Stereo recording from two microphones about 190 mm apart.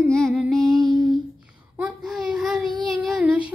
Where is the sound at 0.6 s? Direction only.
20° right (ahead or behind).